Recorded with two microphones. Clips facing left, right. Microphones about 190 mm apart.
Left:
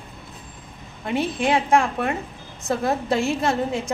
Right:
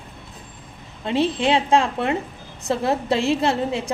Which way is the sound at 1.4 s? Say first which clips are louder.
Left 2 dB; 25° right (ahead or behind).